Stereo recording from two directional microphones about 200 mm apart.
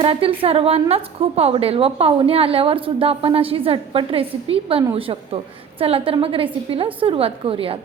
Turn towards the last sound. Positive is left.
turn(degrees=-30)  # may be behind; listen again after turning